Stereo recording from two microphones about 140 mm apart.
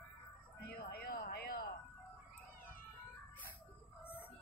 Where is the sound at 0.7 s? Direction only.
90° left.